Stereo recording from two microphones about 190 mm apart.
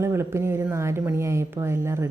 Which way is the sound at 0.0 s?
15° right (ahead or behind).